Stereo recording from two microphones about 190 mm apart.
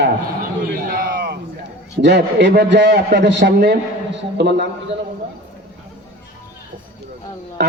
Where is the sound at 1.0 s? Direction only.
60° right (ahead or behind).